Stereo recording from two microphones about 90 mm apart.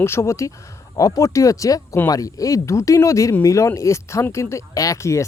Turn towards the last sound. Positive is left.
turn(degrees=35)  # may be behind; listen again after turning